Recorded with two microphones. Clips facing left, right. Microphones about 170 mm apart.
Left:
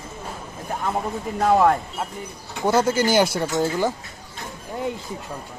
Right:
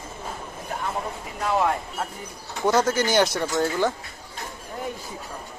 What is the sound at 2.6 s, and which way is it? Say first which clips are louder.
Speech: left 2 dB; 10° left (ahead or behind).